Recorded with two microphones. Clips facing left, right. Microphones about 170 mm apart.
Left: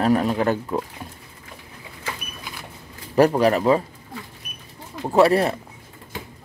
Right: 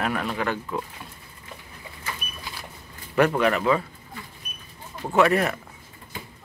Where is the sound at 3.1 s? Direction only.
35° left (ahead or behind).